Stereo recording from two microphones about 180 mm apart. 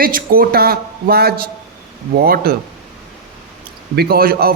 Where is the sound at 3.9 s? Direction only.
60° right (ahead or behind).